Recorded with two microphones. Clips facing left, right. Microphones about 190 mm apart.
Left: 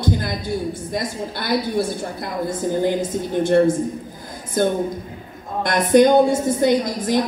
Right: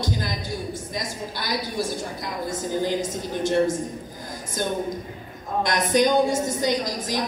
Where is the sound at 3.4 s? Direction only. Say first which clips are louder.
Left 6 dB; 55° left (ahead or behind).